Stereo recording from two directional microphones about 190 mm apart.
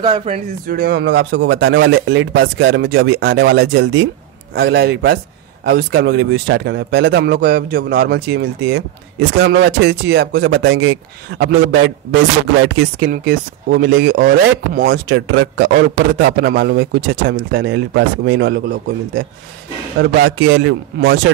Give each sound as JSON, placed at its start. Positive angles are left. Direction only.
{"t": 0.0, "sound": "speech", "side_deg": -30}
{"t": 0.7, "sound": "speech", "side_deg": -50}
{"t": 1.0, "sound": "speech", "side_deg": -75}
{"t": 4.6, "sound": "a man's voice", "side_deg": -60}
{"t": 12.6, "sound": "speech", "side_deg": -80}
{"t": 13.1, "sound": "a man's voice", "side_deg": -50}
{"t": 21.0, "sound": "speech", "side_deg": -65}